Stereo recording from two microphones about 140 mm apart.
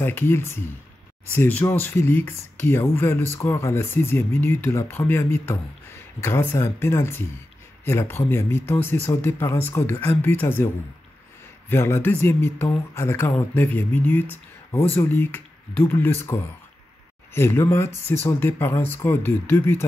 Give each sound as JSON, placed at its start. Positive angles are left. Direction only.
{"t": 0.0, "sound": "speech", "side_deg": 15}
{"t": 11.7, "sound": "speech", "side_deg": 15}